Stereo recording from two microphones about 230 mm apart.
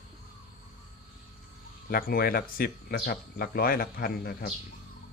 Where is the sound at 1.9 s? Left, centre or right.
Left.